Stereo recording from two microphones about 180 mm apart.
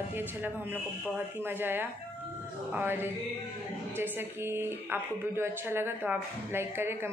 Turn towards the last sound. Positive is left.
turn(degrees=-15)  # may be behind; listen again after turning